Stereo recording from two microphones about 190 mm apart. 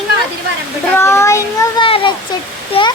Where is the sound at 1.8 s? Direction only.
25° left (ahead or behind).